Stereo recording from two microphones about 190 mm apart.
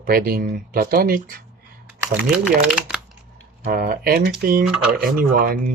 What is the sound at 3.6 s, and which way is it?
Speech, 50° right (ahead or behind).